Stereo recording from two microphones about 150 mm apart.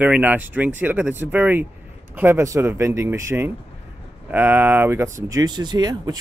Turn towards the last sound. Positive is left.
turn(degrees=-30)  # may be behind; listen again after turning